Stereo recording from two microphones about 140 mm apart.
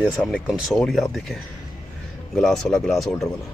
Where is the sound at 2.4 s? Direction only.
5° left (ahead or behind).